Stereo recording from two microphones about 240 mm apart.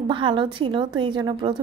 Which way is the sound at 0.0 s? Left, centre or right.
Centre.